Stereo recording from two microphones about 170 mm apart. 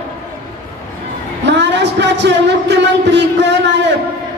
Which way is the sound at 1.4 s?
90° right.